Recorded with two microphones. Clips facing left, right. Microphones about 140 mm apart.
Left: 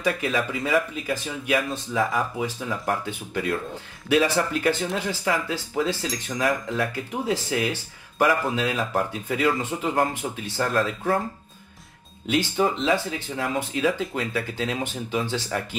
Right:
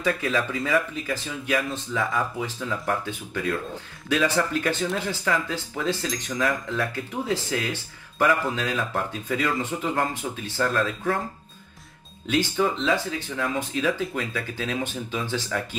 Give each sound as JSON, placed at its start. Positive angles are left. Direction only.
{"t": 0.0, "sound": "speech", "side_deg": 15}
{"t": 10.8, "sound": "speech", "side_deg": 25}
{"t": 12.3, "sound": "speech", "side_deg": 15}